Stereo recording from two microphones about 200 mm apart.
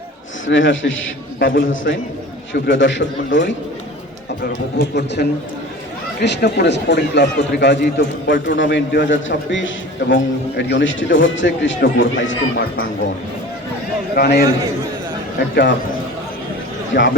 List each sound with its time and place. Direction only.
0.4 s a man's voice: 70° left (ahead or behind)
4.4 s a man's voice: 55° left (ahead or behind); by 12.6 s 70° left (ahead or behind)
14.2 s a man's voice: 55° left (ahead or behind)
16.9 s speech: 55° left (ahead or behind)